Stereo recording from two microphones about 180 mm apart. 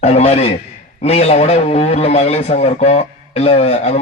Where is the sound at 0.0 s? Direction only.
35° left (ahead or behind).